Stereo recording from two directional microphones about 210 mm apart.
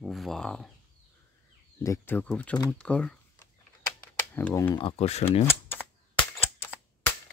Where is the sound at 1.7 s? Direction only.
15° left (ahead or behind).